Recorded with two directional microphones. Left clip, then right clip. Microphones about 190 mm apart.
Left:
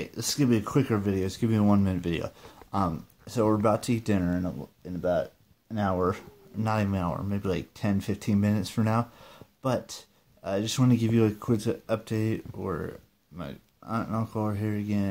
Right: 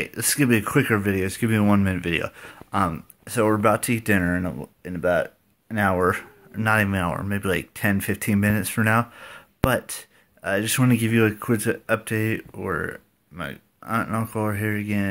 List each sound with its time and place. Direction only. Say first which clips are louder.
0.0 s speech: right 5 dB; 5° right (ahead or behind)
4.2 s speech: right 6 dB; 20° right (ahead or behind)
6.0 s speech: right 7 dB; centre (ahead or behind)